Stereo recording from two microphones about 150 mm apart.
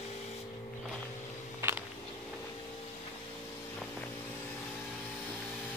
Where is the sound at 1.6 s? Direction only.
15° right (ahead or behind).